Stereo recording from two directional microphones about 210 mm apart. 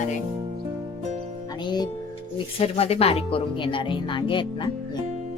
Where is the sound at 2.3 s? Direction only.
30° left (ahead or behind).